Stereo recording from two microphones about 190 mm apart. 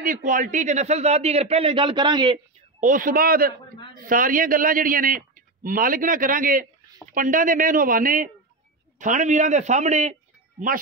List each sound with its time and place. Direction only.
0.0 s speech: 45° right (ahead or behind); by 2.3 s 25° right (ahead or behind)
2.8 s a man's voice: 45° right (ahead or behind)